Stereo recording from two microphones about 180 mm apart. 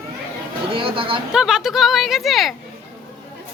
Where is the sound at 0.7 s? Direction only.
30° right (ahead or behind).